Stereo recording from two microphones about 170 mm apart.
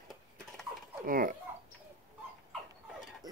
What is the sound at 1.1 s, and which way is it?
Speech, 55° right (ahead or behind).